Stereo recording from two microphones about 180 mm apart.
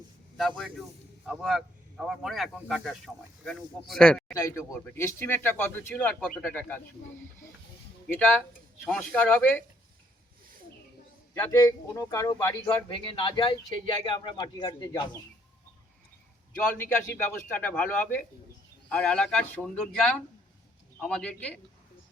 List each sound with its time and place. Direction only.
0.3 s a man's voice: centre (ahead or behind)
4.4 s speech: 15° left (ahead or behind)
8.1 s a man's voice: 5° left (ahead or behind)
11.3 s speech: 20° left (ahead or behind)
12.7 s speech: 30° left (ahead or behind)
17.5 s a man's voice: 10° left (ahead or behind)